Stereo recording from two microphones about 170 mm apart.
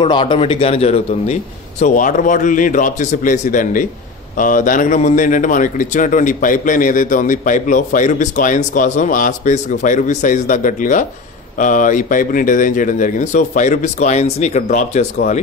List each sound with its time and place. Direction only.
0.0 s speech: 30° left (ahead or behind); by 15.0 s 45° left (ahead or behind)